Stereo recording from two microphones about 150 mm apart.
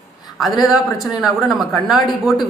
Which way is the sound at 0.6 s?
Centre (ahead or behind).